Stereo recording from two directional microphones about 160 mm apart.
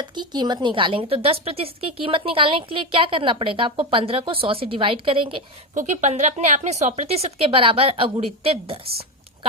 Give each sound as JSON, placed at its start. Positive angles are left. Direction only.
{"t": 0.0, "sound": "a woman's voice", "side_deg": -25}
{"t": 5.7, "sound": "speech", "side_deg": -50}